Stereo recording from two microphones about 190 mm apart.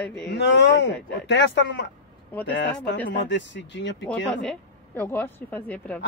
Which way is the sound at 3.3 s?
70° left (ahead or behind).